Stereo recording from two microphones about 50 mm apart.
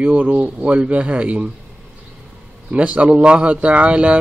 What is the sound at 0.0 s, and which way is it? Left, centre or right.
A man's voice, right.